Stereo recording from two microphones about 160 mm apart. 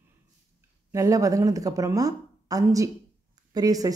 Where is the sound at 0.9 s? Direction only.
20° right (ahead or behind).